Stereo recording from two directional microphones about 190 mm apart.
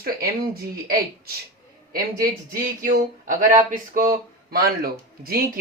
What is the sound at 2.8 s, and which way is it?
Speech, 45° right (ahead or behind).